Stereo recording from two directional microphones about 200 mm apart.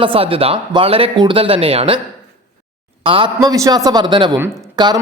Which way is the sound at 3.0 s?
25° right (ahead or behind).